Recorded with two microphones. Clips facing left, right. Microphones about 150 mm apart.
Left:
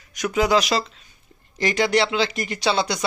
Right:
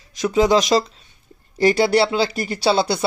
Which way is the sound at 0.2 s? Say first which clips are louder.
Right 4 dB; 35° right (ahead or behind).